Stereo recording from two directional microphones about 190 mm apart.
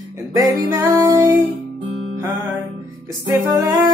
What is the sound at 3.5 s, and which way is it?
Music, 20° right (ahead or behind).